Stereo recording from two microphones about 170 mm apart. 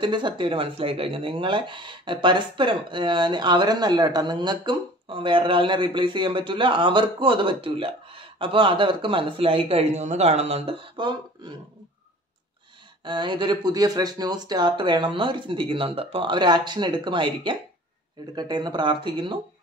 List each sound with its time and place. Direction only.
0.0 s speech: 25° right (ahead or behind)
13.0 s speech: 30° right (ahead or behind)